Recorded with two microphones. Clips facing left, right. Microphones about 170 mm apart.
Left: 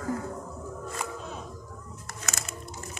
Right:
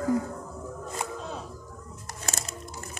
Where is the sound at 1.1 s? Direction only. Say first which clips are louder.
Right 2 dB; 30° right (ahead or behind).